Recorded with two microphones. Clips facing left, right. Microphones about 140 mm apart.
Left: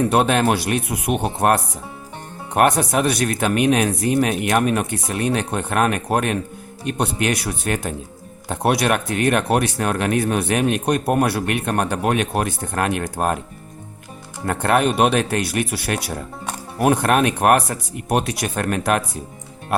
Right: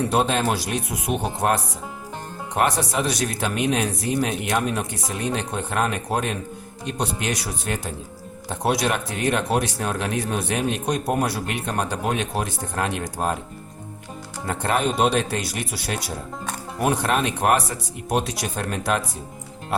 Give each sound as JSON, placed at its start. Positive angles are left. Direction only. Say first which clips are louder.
{"t": 0.1, "sound": "speech", "louder": "left 4 dB", "side_deg": 65}
{"t": 14.4, "sound": "speech", "louder": "left 5 dB", "side_deg": 60}